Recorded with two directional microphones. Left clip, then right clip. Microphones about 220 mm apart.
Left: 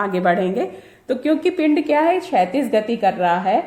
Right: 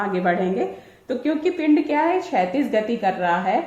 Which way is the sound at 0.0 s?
50° left (ahead or behind).